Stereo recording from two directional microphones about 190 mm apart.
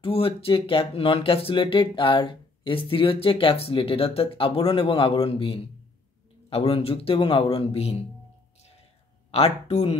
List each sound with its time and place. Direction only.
0.0 s a man's voice: 30° left (ahead or behind)
9.3 s a man's voice: 35° left (ahead or behind)